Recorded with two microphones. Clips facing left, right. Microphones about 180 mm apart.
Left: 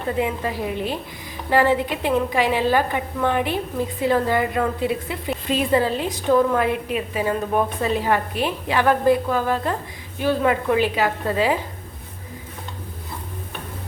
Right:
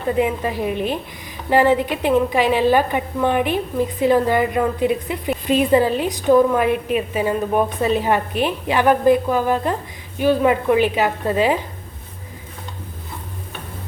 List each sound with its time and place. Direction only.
0.2 s a woman's voice: 20° right (ahead or behind)